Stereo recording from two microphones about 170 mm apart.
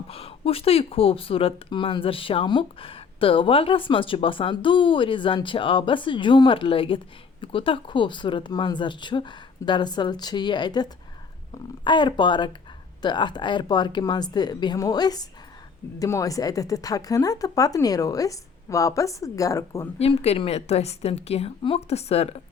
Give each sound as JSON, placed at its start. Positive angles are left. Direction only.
{"t": 0.1, "sound": "speech", "side_deg": 35}
{"t": 11.9, "sound": "speech", "side_deg": 30}
{"t": 20.0, "sound": "speech", "side_deg": 35}